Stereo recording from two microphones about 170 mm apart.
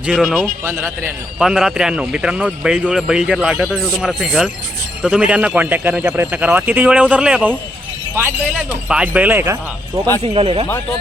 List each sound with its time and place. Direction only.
0.0 s speech: 5° right (ahead or behind)
0.6 s a man's voice: 15° right (ahead or behind)
1.4 s a man's voice: 5° right (ahead or behind)
8.9 s a man's voice: 5° right (ahead or behind)
10.2 s speech: 35° right (ahead or behind)